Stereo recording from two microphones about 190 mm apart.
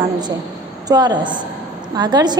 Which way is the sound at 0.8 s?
20° right (ahead or behind).